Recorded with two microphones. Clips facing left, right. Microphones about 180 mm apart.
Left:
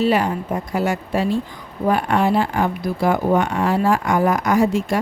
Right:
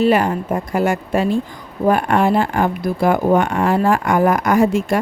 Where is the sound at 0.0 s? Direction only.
50° right (ahead or behind).